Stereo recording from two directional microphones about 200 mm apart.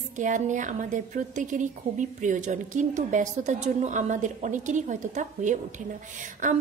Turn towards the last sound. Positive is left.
turn(degrees=-40)  # may be behind; listen again after turning